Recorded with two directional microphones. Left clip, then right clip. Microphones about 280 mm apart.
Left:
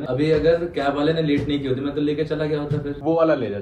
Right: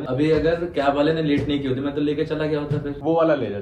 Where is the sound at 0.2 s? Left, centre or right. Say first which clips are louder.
Left 2 dB; left.